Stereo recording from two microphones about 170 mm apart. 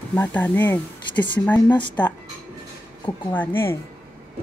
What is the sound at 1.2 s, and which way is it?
Speech, 25° left (ahead or behind).